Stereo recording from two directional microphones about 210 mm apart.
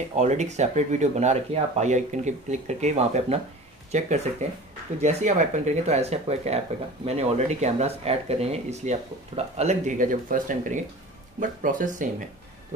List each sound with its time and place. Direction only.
0.1 s speech: 35° right (ahead or behind)